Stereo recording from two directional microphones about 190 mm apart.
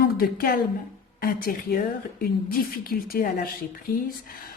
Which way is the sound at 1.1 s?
50° left (ahead or behind).